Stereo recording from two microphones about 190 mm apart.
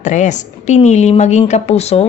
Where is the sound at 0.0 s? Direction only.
40° left (ahead or behind).